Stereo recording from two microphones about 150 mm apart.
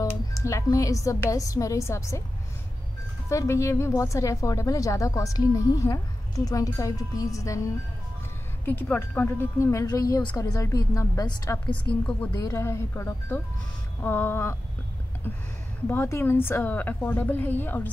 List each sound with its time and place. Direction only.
0.0 s speech: 20° left (ahead or behind)
3.3 s a woman's voice: 20° left (ahead or behind)
12.1 s speech: 10° left (ahead or behind)
15.9 s speech: 15° left (ahead or behind)